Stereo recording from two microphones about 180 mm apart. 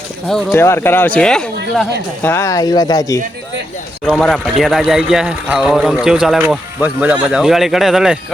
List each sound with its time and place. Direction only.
0.3 s speech: centre (ahead or behind)
0.6 s speech: 15° left (ahead or behind)
2.2 s speech: 15° left (ahead or behind)
4.0 s speech: 5° left (ahead or behind)